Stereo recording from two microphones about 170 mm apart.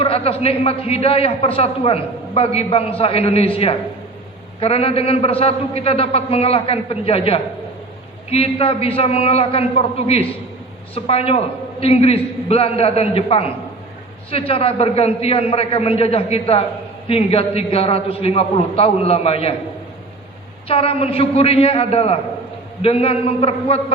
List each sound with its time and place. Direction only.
0.0 s a man's voice: 35° left (ahead or behind)
20.7 s a man's voice: 35° left (ahead or behind)